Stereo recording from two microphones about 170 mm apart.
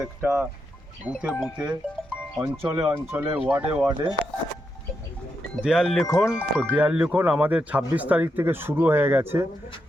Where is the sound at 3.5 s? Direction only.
10° right (ahead or behind).